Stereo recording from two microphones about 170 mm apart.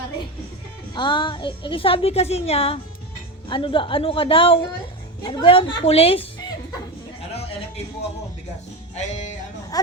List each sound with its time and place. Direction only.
0.9 s a woman's voice: 25° left (ahead or behind)
9.7 s a woman's voice: 20° left (ahead or behind)